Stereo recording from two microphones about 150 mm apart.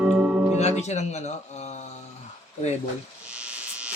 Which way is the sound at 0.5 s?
50° left (ahead or behind).